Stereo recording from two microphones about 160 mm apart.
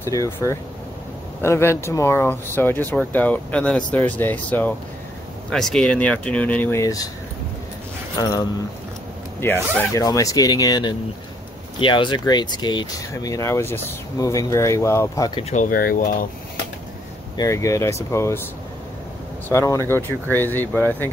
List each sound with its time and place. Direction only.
0.0 s speech: 20° left (ahead or behind)
8.2 s speech: 25° left (ahead or behind)
15.5 s speech: 60° left (ahead or behind)
17.4 s speech: 20° left (ahead or behind)
19.5 s speech: 20° left (ahead or behind)